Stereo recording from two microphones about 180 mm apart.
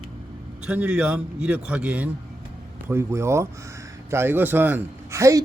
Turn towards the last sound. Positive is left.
turn(degrees=-15)  # may be behind; listen again after turning